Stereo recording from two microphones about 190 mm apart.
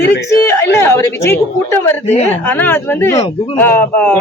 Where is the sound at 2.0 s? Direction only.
35° left (ahead or behind).